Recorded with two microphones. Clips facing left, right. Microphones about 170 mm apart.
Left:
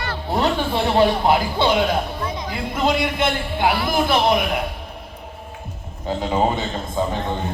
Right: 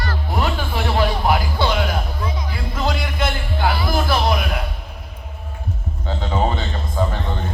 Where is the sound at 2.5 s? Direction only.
20° left (ahead or behind).